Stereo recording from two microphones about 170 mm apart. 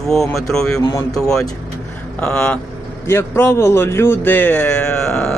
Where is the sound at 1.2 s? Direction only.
5° left (ahead or behind).